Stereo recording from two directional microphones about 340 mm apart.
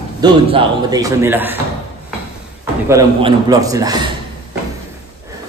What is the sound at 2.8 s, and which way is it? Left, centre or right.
A man's voice, centre.